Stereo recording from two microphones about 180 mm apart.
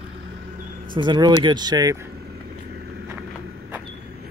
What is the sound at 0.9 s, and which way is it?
Speech, 25° right (ahead or behind).